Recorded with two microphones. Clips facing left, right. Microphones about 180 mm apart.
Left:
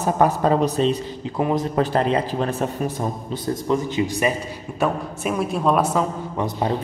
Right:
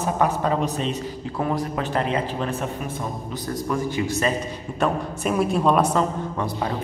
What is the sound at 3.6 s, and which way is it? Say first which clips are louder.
Speech: left 3 dB; 20° left (ahead or behind).